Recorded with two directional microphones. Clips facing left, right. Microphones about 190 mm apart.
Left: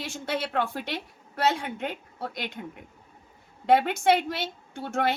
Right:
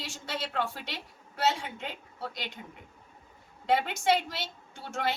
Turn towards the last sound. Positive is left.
turn(degrees=55)  # may be behind; listen again after turning